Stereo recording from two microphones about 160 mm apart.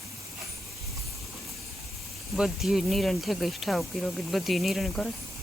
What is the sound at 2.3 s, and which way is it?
Speech, centre (ahead or behind).